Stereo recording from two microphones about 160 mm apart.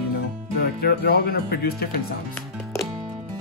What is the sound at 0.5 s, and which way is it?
Speech, 80° left.